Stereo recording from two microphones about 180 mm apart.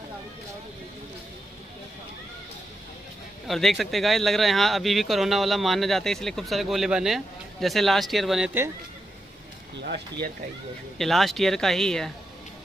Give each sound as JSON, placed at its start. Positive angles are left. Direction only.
{"t": 3.4, "sound": "speech", "side_deg": 0}
{"t": 9.8, "sound": "speech", "side_deg": -70}
{"t": 11.0, "sound": "speech", "side_deg": 0}